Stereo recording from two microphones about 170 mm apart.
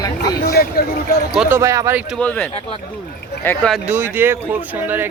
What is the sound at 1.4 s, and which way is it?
Speech, 15° right (ahead or behind).